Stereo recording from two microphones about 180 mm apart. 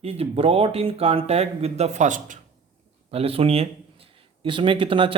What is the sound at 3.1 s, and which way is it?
Speech, 35° right (ahead or behind).